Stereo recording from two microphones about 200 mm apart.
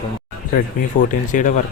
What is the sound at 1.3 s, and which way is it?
Speech, 40° left (ahead or behind).